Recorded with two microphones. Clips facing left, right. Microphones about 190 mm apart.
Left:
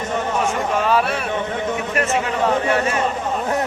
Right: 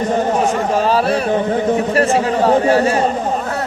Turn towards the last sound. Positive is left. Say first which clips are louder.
# right 6 dB
turn(degrees=-35)  # may be behind; listen again after turning